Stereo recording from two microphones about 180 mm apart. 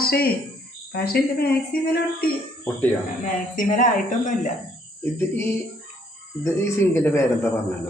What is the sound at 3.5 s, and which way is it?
A woman's voice, 45° left (ahead or behind).